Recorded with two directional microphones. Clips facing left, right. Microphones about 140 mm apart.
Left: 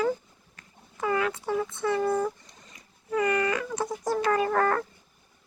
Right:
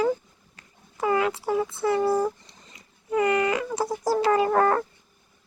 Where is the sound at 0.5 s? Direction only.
25° right (ahead or behind).